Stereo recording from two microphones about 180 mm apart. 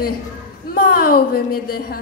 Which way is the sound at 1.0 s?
55° left (ahead or behind).